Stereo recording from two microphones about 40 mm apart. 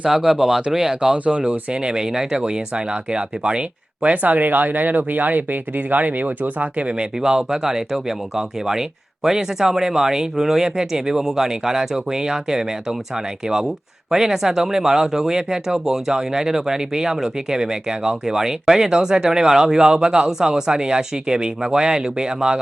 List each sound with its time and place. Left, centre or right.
0.1 s speech: centre
1.1 s speech: right
1.8 s speech: centre; by 6.9 s right
7.0 s speech: centre
14.1 s speech: centre